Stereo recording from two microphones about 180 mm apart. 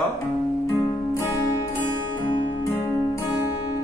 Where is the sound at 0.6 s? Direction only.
15° left (ahead or behind).